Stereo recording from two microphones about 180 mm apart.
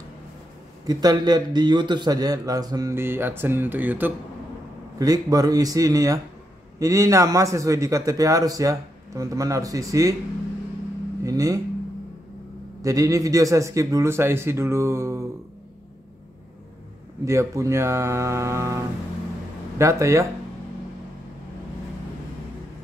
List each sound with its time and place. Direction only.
0.8 s a man's voice: 20° right (ahead or behind)
4.9 s a man's voice: 20° right (ahead or behind)
11.2 s a man's voice: 20° right (ahead or behind)
12.8 s a man's voice: 20° right (ahead or behind)
17.2 s a man's voice: 15° right (ahead or behind)